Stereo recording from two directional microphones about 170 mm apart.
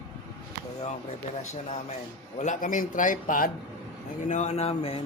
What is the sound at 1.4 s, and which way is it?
A man's voice, 40° left (ahead or behind).